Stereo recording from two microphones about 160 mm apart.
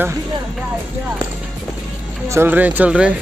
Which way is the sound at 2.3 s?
10° right (ahead or behind).